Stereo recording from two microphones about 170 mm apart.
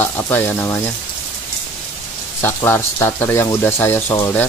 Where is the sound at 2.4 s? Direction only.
15° left (ahead or behind).